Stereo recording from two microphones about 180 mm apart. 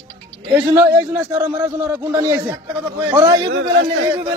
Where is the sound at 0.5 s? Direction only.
15° right (ahead or behind).